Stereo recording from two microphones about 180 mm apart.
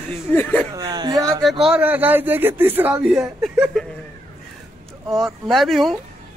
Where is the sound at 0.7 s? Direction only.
20° right (ahead or behind).